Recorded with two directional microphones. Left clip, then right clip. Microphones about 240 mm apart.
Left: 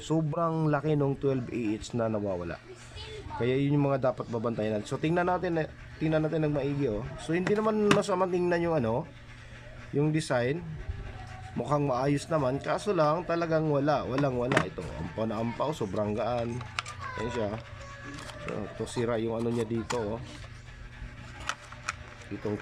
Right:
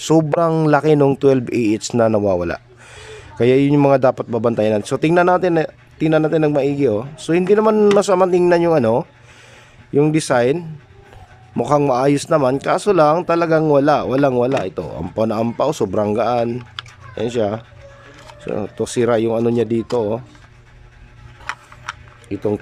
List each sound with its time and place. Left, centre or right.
0.0 s a man's voice: right